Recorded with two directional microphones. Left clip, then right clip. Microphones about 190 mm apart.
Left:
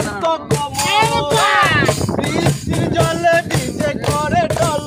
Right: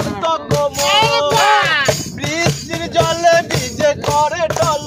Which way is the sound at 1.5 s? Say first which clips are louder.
Even; 45° right (ahead or behind).